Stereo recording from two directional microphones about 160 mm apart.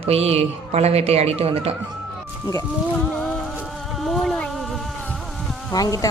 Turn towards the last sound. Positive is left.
turn(degrees=20)  # may be behind; listen again after turning